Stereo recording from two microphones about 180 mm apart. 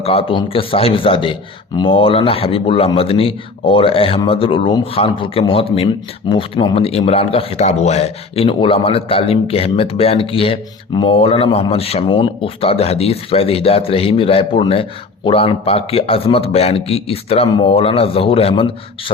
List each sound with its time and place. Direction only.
0.0 s speech: 30° left (ahead or behind)